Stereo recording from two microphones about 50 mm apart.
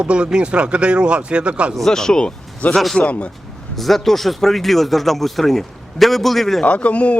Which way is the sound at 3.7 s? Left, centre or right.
Centre.